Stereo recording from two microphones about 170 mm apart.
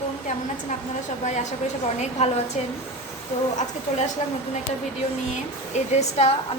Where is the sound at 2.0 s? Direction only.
40° left (ahead or behind).